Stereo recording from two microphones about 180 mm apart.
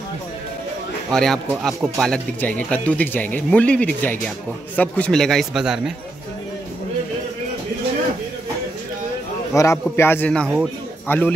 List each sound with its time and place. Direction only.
1.1 s a man's voice: centre (ahead or behind)
9.5 s speech: 15° left (ahead or behind)